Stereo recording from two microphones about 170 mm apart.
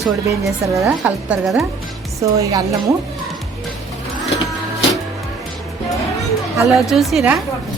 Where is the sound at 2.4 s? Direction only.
20° right (ahead or behind).